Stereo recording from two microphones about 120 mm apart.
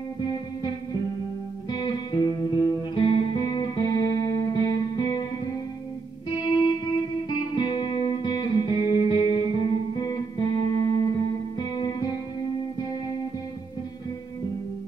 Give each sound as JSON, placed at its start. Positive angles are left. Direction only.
{"t": 1.7, "sound": "music", "side_deg": 40}
{"t": 6.3, "sound": "music", "side_deg": 40}